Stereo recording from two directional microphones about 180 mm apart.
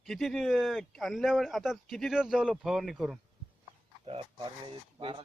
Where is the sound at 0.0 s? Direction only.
Centre (ahead or behind).